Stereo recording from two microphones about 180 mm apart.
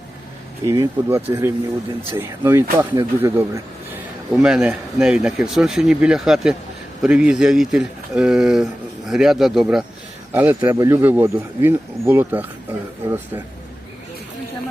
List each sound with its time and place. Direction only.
0.6 s speech: 15° right (ahead or behind)
4.3 s speech: 5° right (ahead or behind)